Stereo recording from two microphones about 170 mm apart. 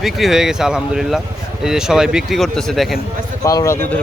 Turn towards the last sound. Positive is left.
turn(degrees=20)  # may be behind; listen again after turning